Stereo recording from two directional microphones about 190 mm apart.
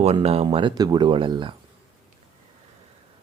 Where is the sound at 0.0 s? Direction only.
30° right (ahead or behind).